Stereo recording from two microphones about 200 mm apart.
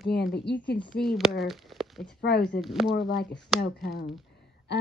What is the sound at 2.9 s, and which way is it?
Speech, 55° left (ahead or behind).